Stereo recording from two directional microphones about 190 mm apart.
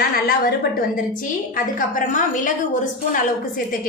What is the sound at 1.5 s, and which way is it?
A woman's voice, 45° left (ahead or behind).